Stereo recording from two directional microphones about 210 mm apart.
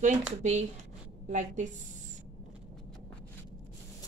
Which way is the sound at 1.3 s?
35° right (ahead or behind).